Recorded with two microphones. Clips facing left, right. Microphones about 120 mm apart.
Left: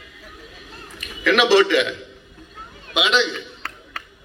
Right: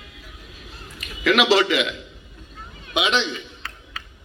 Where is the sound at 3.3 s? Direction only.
60° left (ahead or behind).